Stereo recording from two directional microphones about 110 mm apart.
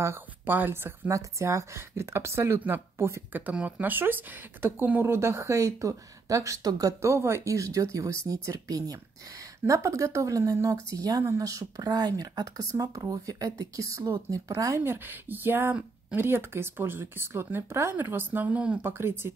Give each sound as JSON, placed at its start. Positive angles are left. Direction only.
{"t": 0.0, "sound": "speech", "side_deg": -20}
{"t": 15.0, "sound": "speech", "side_deg": -20}